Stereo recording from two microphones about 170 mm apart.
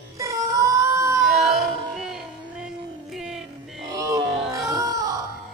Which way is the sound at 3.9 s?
20° right (ahead or behind).